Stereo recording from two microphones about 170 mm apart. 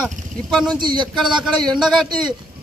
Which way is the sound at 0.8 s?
25° right (ahead or behind).